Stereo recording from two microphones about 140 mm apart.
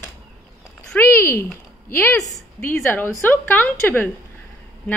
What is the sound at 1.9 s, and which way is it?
A woman's voice, 20° left (ahead or behind).